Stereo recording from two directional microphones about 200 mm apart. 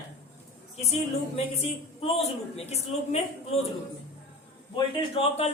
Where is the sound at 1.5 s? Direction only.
30° left (ahead or behind).